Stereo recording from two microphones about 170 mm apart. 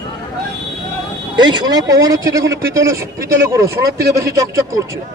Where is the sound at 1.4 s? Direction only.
25° right (ahead or behind).